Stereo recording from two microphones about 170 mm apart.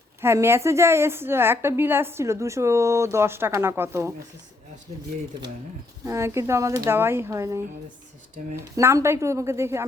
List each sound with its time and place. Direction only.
0.2 s a woman's voice: 15° right (ahead or behind)
6.1 s a woman's voice: 15° right (ahead or behind)
8.7 s a woman's voice: 15° right (ahead or behind)